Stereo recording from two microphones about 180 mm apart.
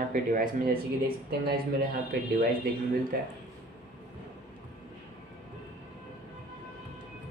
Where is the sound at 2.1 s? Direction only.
60° right (ahead or behind).